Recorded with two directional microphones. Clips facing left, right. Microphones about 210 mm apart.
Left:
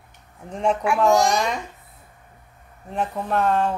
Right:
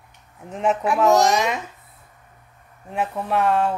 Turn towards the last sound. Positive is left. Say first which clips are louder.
# right 1 dB
turn(degrees=-5)  # may be behind; listen again after turning